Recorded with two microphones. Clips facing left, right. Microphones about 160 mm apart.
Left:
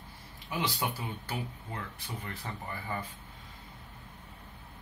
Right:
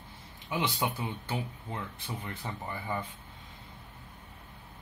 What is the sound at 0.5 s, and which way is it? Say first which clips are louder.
A man's voice: right 2 dB; 20° right (ahead or behind).